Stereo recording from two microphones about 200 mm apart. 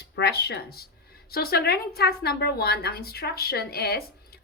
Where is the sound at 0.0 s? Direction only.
55° left (ahead or behind).